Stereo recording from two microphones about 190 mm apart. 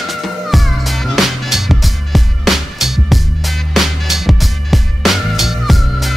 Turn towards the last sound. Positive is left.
turn(degrees=0)  # may be behind; listen again after turning